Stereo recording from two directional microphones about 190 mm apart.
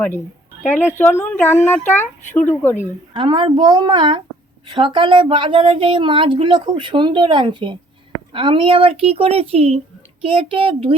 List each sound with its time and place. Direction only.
0.6 s speech: 10° left (ahead or behind)
3.1 s speech: 25° right (ahead or behind)